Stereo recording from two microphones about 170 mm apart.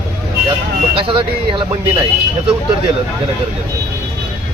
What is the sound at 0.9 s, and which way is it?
Speech, 30° right (ahead or behind).